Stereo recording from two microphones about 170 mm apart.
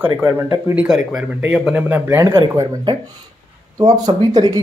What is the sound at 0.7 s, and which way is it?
Speech, 5° right (ahead or behind).